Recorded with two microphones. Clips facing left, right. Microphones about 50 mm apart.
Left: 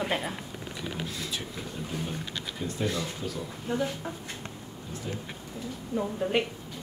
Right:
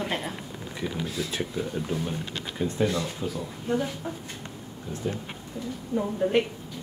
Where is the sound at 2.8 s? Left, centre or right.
Centre.